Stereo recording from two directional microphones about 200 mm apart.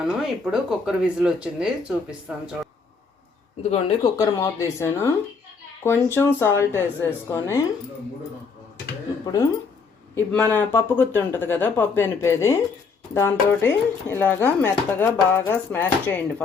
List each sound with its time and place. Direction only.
0.2 s speech: centre (ahead or behind)
3.6 s speech: 30° left (ahead or behind)
4.2 s speech: 15° left (ahead or behind)
9.2 s speech: 15° left (ahead or behind)